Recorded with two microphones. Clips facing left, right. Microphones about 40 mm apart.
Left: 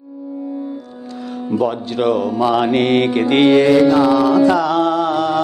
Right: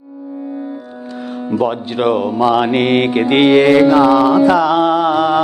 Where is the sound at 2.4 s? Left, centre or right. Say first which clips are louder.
Right 2 dB; centre.